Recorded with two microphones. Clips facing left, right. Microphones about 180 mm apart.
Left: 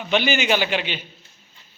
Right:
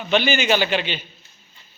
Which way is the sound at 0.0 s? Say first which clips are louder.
Right 1 dB; 15° left (ahead or behind).